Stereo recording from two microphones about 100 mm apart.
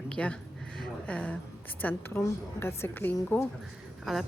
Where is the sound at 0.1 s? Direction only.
10° left (ahead or behind).